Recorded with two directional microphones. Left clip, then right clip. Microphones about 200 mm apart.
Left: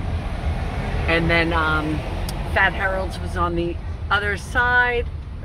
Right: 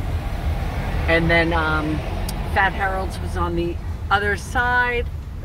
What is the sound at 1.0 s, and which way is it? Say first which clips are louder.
Speech: right 2 dB; 20° left (ahead or behind).